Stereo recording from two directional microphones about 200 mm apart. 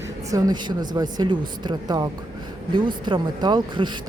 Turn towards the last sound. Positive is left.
turn(degrees=-20)  # may be behind; listen again after turning